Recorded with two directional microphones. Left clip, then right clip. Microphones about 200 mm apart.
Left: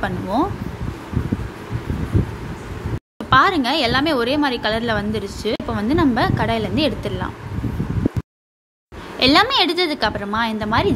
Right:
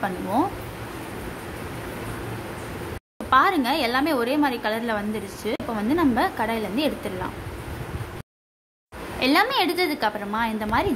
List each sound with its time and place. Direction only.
0.0 s a woman's voice: 15° left (ahead or behind)
3.3 s a woman's voice: 15° left (ahead or behind)
9.2 s a woman's voice: 20° left (ahead or behind)